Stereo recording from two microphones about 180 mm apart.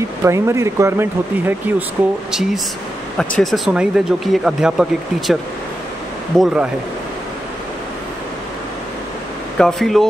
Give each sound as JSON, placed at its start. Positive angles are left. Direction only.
{"t": 0.2, "sound": "speech", "side_deg": -15}
{"t": 3.2, "sound": "speech", "side_deg": 5}
{"t": 9.6, "sound": "speech", "side_deg": 5}